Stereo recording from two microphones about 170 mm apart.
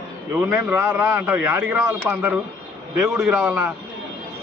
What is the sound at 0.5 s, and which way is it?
A man's voice, 15° right (ahead or behind).